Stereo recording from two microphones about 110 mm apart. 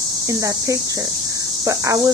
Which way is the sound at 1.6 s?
30° right (ahead or behind).